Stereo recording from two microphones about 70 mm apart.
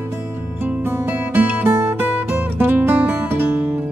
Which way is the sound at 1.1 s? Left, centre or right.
Right.